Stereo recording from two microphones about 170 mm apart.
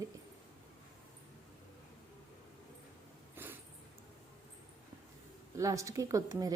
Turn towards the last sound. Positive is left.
turn(degrees=-20)  # may be behind; listen again after turning